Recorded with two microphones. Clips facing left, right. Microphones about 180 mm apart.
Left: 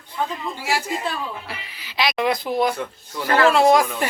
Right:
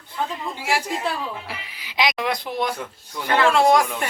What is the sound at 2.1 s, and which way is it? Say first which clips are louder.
Speech: left 4 dB; centre (ahead or behind).